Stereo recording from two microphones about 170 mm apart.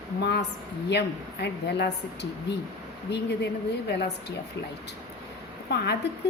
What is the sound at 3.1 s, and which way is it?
A woman's voice, 90° left.